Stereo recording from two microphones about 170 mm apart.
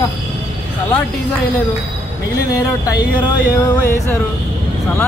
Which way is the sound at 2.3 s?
20° left (ahead or behind).